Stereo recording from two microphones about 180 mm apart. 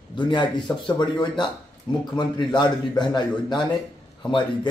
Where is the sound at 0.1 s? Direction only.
25° left (ahead or behind).